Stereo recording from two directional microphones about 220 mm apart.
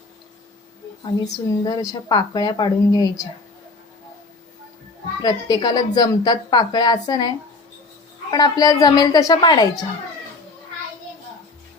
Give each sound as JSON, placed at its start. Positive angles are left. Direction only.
{"t": 1.2, "sound": "a woman's voice", "side_deg": 15}
{"t": 5.2, "sound": "a woman's voice", "side_deg": 20}